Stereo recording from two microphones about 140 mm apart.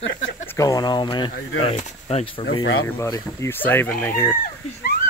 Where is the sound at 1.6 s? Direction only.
50° left (ahead or behind).